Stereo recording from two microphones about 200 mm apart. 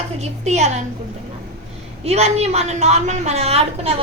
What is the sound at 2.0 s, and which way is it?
A woman's voice, 30° right (ahead or behind).